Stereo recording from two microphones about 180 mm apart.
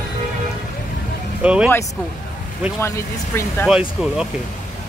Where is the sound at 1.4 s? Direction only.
5° right (ahead or behind).